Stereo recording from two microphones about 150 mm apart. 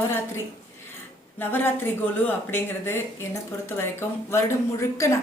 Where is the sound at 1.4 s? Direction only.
15° left (ahead or behind).